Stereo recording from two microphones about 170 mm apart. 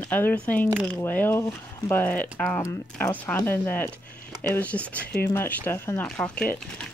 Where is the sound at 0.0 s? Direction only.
10° left (ahead or behind).